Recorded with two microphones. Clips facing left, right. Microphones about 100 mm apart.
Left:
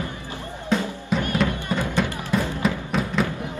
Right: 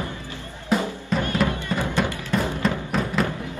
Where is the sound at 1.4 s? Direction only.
5° right (ahead or behind).